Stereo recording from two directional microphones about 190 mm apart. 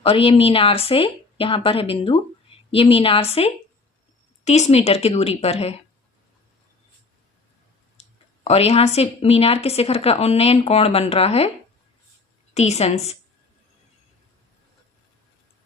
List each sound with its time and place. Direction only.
0.0 s a woman's voice: 30° left (ahead or behind)
8.0 s a sound: 35° left (ahead or behind)
8.4 s a woman's voice: 30° left (ahead or behind)
12.5 s a woman's voice: 35° left (ahead or behind)